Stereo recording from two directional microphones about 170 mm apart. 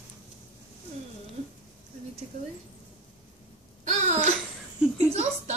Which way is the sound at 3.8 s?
45° right (ahead or behind).